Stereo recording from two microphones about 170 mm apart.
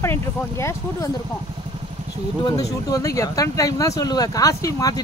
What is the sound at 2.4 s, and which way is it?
Speech, 20° left (ahead or behind).